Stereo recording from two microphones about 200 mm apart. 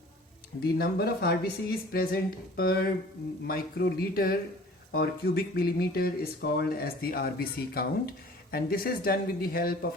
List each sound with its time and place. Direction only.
0.6 s speech: 50° left (ahead or behind)